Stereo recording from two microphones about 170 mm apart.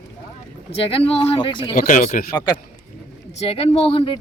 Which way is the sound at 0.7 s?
35° left (ahead or behind).